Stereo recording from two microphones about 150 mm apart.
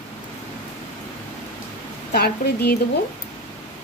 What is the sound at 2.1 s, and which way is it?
Speech, 90° left.